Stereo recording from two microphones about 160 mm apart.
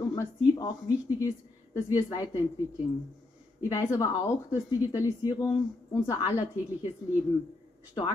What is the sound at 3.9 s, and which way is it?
A woman's voice, 20° left (ahead or behind).